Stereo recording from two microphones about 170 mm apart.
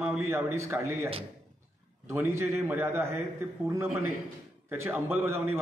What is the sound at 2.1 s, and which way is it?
A man's voice, 15° right (ahead or behind).